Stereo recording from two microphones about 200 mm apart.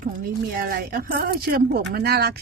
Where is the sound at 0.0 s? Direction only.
45° right (ahead or behind).